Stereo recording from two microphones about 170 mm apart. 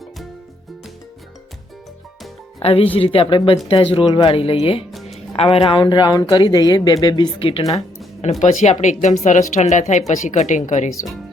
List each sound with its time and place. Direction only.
2.6 s a woman's voice: 35° left (ahead or behind)